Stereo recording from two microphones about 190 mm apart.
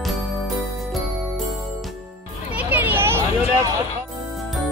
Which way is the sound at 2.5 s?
10° right (ahead or behind).